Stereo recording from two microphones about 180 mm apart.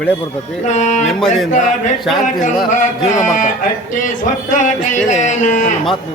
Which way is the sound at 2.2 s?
45° left (ahead or behind).